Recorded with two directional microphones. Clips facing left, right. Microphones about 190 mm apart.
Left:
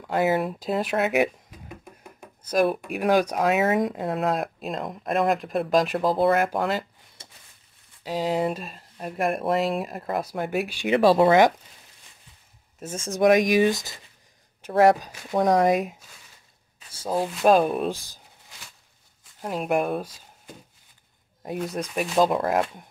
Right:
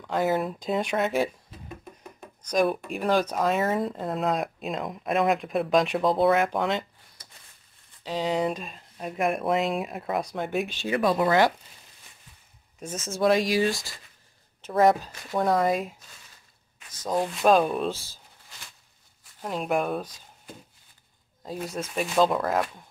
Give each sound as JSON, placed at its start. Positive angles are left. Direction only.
{"t": 0.0, "sound": "speech", "side_deg": 15}
{"t": 0.3, "sound": "speech", "side_deg": 5}
{"t": 1.1, "sound": "a sound", "side_deg": 15}
{"t": 2.1, "sound": "speech", "side_deg": 5}
{"t": 7.2, "sound": "a sound", "side_deg": 25}
{"t": 8.0, "sound": "speech", "side_deg": 10}
{"t": 11.0, "sound": "speech", "side_deg": 30}
{"t": 12.7, "sound": "speech", "side_deg": 5}
{"t": 17.0, "sound": "speech", "side_deg": 5}
{"t": 17.9, "sound": "speech", "side_deg": 15}
{"t": 19.4, "sound": "speech", "side_deg": 5}
{"t": 21.7, "sound": "speech", "side_deg": 15}